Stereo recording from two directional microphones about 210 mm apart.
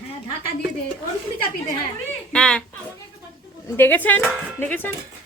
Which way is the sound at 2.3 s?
5° left (ahead or behind).